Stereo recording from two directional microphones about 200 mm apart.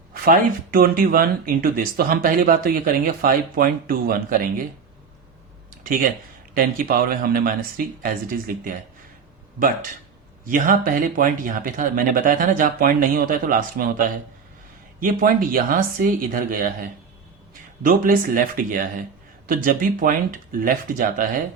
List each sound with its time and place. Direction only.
0.1 s speech: 45° right (ahead or behind)
5.8 s a man's voice: 45° right (ahead or behind)
10.5 s speech: 45° right (ahead or behind)
15.0 s speech: 45° right (ahead or behind)